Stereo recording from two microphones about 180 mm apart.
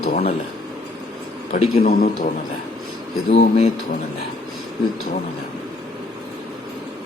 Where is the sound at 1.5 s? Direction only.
40° left (ahead or behind).